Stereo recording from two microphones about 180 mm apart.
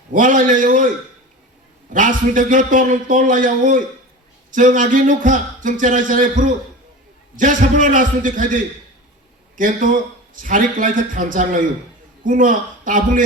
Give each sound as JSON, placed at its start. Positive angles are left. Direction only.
{"t": 0.1, "sound": "speech", "side_deg": -45}
{"t": 1.9, "sound": "speech", "side_deg": -45}